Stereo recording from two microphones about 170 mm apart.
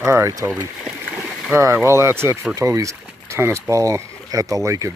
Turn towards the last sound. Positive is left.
turn(degrees=-20)  # may be behind; listen again after turning